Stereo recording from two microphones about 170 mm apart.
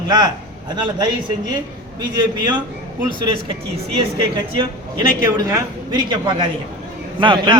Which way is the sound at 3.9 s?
30° right (ahead or behind).